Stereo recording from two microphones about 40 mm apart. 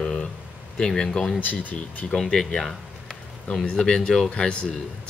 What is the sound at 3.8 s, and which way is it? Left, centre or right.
Speech, centre.